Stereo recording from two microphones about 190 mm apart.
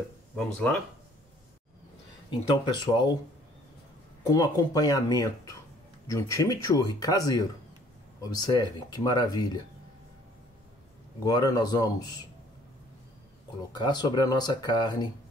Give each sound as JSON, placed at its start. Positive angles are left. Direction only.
{"t": 0.4, "sound": "speech", "side_deg": 5}
{"t": 2.5, "sound": "speech", "side_deg": 25}
{"t": 4.2, "sound": "speech", "side_deg": 20}
{"t": 11.2, "sound": "speech", "side_deg": 20}
{"t": 13.7, "sound": "speech", "side_deg": 25}